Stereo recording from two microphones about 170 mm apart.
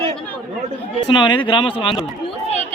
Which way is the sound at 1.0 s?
25° left (ahead or behind).